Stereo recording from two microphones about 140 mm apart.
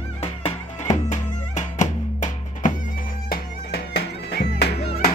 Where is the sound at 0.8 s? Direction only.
60° left (ahead or behind).